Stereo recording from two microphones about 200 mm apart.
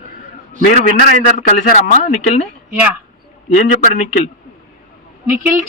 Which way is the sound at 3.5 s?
35° left (ahead or behind).